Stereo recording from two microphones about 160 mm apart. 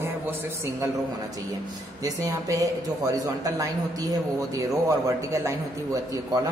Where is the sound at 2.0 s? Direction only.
20° right (ahead or behind).